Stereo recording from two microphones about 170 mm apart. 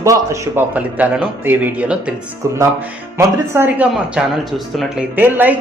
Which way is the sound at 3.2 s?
15° right (ahead or behind).